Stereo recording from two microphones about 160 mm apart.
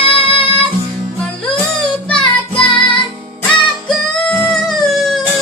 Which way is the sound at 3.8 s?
5° left (ahead or behind).